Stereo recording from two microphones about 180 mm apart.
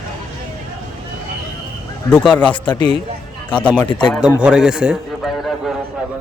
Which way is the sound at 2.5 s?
25° left (ahead or behind).